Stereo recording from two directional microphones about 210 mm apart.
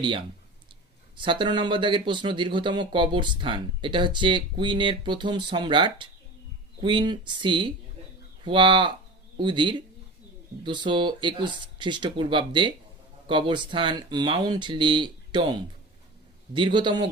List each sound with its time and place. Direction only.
0.0 s speech: 20° right (ahead or behind)